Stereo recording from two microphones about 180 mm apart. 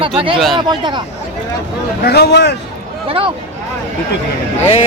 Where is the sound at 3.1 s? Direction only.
30° right (ahead or behind).